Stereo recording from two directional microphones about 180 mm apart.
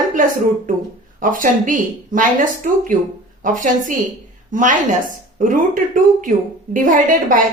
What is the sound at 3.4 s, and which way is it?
A woman's voice, 45° right (ahead or behind).